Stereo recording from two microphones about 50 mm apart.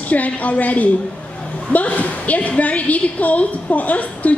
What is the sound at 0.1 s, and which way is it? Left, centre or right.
A woman's voice, left.